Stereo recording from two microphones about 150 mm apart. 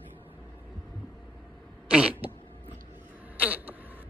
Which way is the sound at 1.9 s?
10° right (ahead or behind).